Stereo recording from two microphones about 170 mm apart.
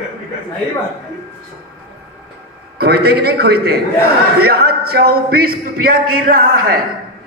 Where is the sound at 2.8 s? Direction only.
70° right (ahead or behind).